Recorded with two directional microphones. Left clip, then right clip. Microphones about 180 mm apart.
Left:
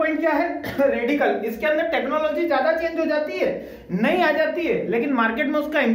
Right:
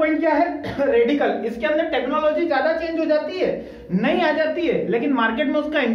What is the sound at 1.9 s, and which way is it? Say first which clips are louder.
Speech: right 2 dB; 35° left (ahead or behind).